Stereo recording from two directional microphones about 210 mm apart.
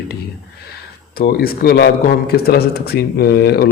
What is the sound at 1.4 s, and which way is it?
Speech, 50° left (ahead or behind).